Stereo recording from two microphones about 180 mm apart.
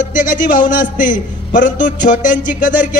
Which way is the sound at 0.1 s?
50° left (ahead or behind).